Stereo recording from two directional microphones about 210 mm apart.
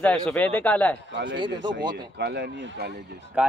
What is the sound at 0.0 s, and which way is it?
Speech, 5° left (ahead or behind).